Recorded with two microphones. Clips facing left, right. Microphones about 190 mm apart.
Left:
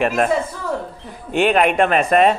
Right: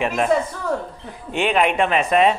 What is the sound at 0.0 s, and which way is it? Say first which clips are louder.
Speech: left 3 dB; 55° left (ahead or behind).